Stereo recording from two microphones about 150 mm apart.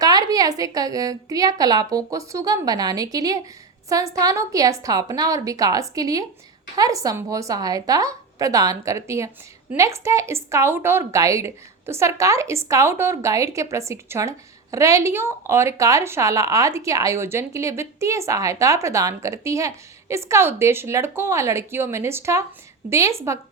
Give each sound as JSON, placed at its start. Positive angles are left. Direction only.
{"t": 0.0, "sound": "a woman's voice", "side_deg": -25}